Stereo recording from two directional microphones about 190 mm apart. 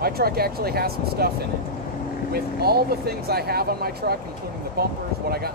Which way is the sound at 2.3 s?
55° right (ahead or behind).